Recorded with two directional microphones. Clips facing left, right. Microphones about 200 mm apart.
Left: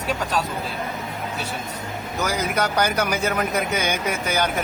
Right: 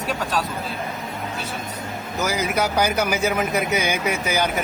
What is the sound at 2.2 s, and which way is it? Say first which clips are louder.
Speech: right 1 dB; 10° right (ahead or behind).